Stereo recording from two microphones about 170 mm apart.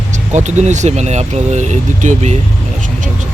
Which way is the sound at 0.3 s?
45° right (ahead or behind).